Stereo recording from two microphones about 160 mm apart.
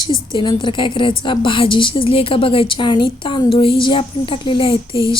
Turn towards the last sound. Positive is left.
turn(degrees=35)  # may be behind; listen again after turning